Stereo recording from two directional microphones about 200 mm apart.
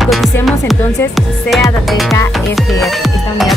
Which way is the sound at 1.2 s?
Centre (ahead or behind).